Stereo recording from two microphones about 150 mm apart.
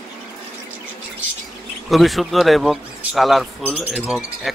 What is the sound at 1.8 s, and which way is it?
A man's voice, centre (ahead or behind).